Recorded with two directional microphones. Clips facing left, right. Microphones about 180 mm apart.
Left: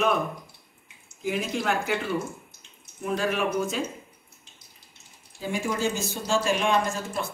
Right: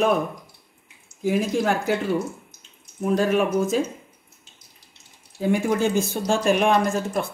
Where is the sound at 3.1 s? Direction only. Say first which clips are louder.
Right 5 dB; 45° right (ahead or behind).